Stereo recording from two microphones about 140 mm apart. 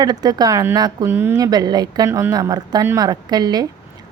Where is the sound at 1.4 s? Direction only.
30° right (ahead or behind).